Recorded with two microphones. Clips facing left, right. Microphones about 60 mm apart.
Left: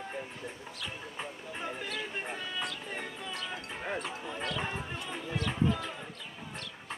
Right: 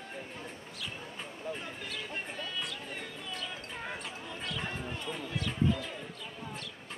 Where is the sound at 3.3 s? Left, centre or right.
Centre.